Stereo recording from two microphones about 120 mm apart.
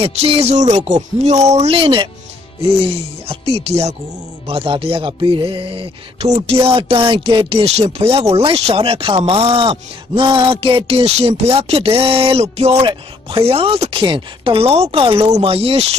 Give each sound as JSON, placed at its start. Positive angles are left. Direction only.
{"t": 0.0, "sound": "speech", "side_deg": -55}
{"t": 12.8, "sound": "speech", "side_deg": -50}